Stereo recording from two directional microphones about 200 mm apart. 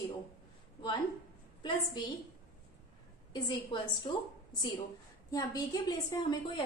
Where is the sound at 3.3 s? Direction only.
20° left (ahead or behind).